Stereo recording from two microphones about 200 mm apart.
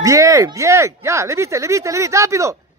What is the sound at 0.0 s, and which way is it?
Speech, 15° right (ahead or behind).